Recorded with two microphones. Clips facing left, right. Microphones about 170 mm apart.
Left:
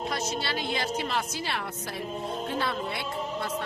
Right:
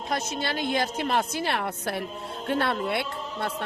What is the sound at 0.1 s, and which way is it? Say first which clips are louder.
A woman's voice: right 2 dB; 50° right (ahead or behind).